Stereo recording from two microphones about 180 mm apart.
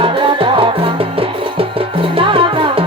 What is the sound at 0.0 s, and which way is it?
Music, 30° right (ahead or behind).